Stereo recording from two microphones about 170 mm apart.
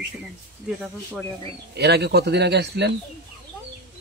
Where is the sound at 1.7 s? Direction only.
80° right.